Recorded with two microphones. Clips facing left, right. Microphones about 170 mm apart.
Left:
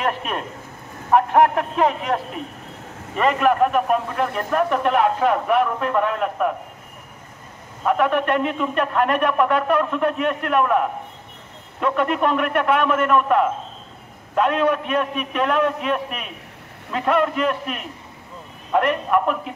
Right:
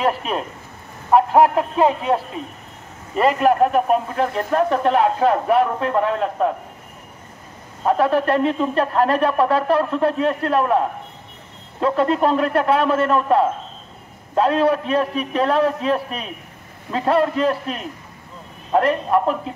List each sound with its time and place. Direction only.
1.1 s speech: 30° right (ahead or behind)
7.8 s speech: 30° right (ahead or behind)